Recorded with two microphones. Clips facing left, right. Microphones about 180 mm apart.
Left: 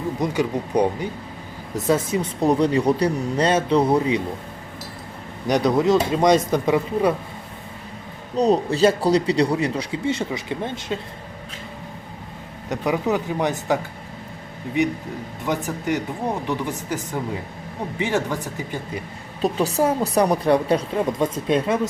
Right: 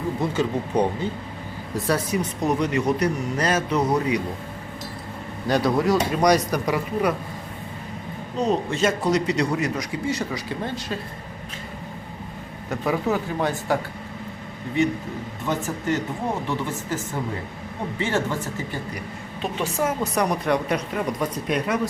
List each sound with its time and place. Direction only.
0.2 s speech: 15° left (ahead or behind); by 4.2 s 30° left (ahead or behind)
5.5 s speech: 20° left (ahead or behind)
8.4 s a man's voice: 35° left (ahead or behind)
12.6 s speech: 15° left (ahead or behind)
14.8 s speech: 15° left (ahead or behind)
19.4 s a man's voice: 35° left (ahead or behind)